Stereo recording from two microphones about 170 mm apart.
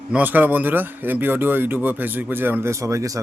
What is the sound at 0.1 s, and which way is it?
Speech, 10° right (ahead or behind).